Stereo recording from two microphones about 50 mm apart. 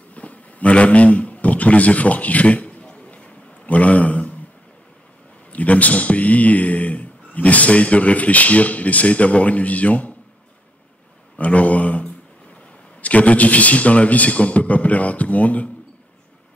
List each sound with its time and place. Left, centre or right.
0.1 s a sound: left
5.5 s a man's voice: left
11.3 s a man's voice: left